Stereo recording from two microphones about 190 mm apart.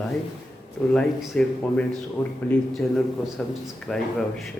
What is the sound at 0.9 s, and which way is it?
Speech, 5° left (ahead or behind).